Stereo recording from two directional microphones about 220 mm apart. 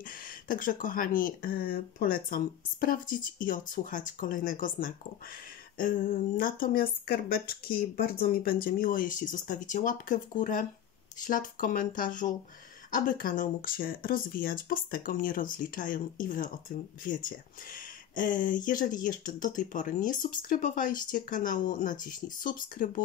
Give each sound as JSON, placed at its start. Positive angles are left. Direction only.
{"t": 0.0, "sound": "speech", "side_deg": 40}